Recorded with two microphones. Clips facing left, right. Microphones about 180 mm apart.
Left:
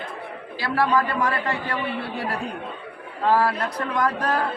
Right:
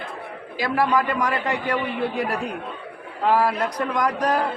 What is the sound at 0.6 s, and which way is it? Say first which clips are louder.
A man's voice: right 1 dB; 15° right (ahead or behind).